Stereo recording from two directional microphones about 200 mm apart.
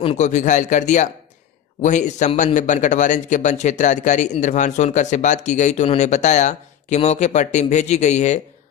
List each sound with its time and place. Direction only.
0.0 s speech: 35° left (ahead or behind)